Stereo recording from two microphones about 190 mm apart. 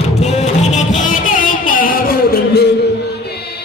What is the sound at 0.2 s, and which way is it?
Music, 35° left (ahead or behind).